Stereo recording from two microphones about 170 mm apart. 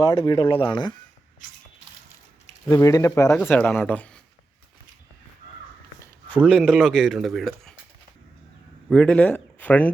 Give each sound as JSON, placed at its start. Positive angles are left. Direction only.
{"t": 0.0, "sound": "speech", "side_deg": 25}
{"t": 2.6, "sound": "speech", "side_deg": 20}
{"t": 6.0, "sound": "speech", "side_deg": 10}
{"t": 8.9, "sound": "speech", "side_deg": 5}